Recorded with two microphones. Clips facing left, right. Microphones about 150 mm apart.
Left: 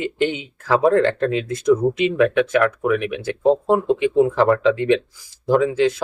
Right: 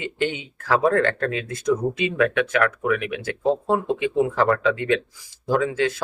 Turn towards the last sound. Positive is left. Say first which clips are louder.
# left 5 dB
turn(degrees=25)  # may be behind; listen again after turning